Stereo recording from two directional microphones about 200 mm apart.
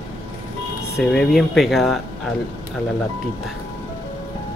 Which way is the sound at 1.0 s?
Centre (ahead or behind).